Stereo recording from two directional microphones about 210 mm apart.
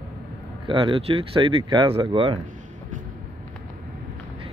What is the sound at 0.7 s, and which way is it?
Speech, 25° right (ahead or behind).